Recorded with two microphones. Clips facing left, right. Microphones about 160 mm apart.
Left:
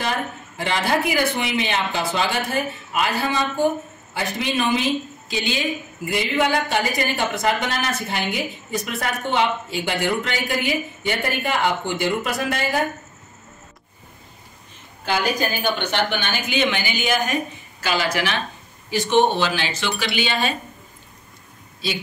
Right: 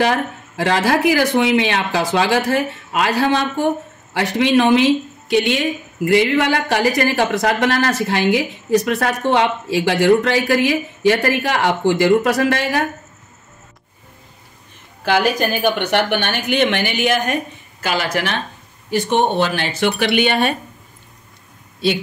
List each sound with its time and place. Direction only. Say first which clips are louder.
0.0 s speech: right 8 dB; 85° right
15.0 s speech: right 5 dB; 70° right (ahead or behind)
17.8 s speech: right 2 dB; 50° right (ahead or behind)